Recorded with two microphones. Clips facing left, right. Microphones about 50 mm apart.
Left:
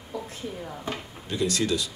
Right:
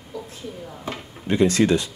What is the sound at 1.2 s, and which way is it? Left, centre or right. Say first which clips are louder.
Speech: right 9 dB; right.